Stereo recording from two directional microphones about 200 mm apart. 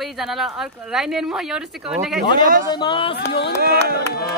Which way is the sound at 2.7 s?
25° left (ahead or behind).